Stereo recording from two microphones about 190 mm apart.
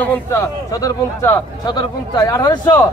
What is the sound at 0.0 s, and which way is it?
A man's voice, 15° left (ahead or behind).